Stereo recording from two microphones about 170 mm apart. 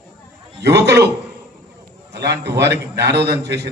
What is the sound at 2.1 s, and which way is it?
A man's voice, 75° right (ahead or behind).